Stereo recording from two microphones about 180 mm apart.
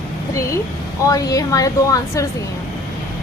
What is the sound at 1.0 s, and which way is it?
A woman's voice, 20° left (ahead or behind).